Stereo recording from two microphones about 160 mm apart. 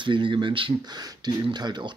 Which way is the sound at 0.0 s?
30° right (ahead or behind).